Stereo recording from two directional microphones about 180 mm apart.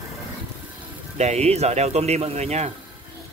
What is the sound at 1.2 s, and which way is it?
Speech, 35° right (ahead or behind).